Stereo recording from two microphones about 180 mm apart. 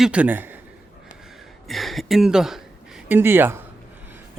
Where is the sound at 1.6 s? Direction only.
Centre (ahead or behind).